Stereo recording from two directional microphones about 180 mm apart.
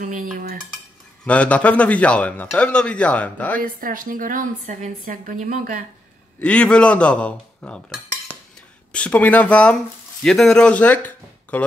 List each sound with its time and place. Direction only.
0.0 s a woman's voice: 50° right (ahead or behind)
1.2 s speech: 5° left (ahead or behind)
3.6 s a woman's voice: 50° right (ahead or behind)
6.4 s cutlery: 5° left (ahead or behind)
8.9 s speech: 5° left (ahead or behind)